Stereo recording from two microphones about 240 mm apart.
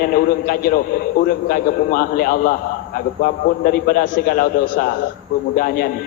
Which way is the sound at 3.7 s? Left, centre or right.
Left.